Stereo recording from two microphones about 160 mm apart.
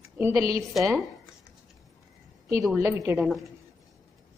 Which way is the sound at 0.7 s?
Centre (ahead or behind).